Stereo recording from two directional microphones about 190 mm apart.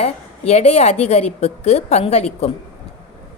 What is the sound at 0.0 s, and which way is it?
A woman's voice, 35° left (ahead or behind).